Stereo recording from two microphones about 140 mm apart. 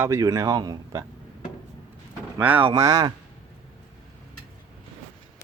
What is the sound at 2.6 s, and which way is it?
Speech, 40° right (ahead or behind).